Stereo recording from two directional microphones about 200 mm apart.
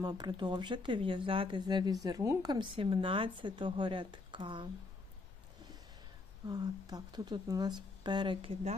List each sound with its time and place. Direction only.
0.0 s speech: 20° right (ahead or behind)
6.5 s speech: 20° right (ahead or behind)